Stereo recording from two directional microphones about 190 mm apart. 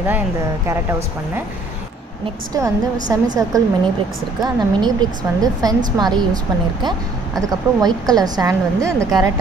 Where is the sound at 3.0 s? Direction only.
20° right (ahead or behind).